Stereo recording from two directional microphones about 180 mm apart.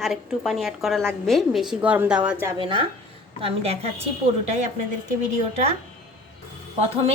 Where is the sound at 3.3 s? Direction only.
35° right (ahead or behind).